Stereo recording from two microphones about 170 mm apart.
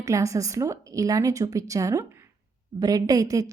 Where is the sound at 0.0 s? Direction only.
20° right (ahead or behind).